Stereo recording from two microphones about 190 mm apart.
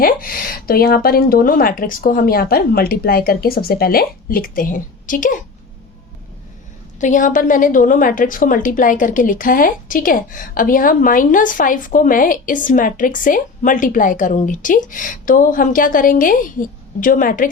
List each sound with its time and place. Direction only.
0.0 s a woman's voice: 50° left (ahead or behind)
7.0 s a woman's voice: 40° left (ahead or behind)